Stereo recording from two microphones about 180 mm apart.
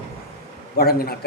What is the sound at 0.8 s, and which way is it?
Speech, 60° left (ahead or behind).